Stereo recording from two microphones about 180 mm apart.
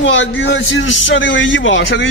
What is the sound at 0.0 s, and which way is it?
A man's voice, 90° left.